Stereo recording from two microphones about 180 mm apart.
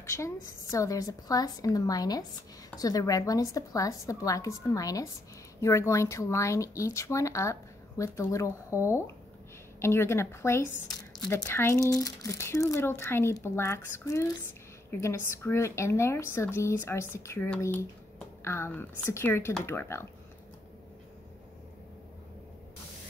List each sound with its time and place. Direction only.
0.0 s a woman's voice: 15° left (ahead or behind)